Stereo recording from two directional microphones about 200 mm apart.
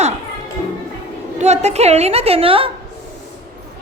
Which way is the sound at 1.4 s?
35° right (ahead or behind).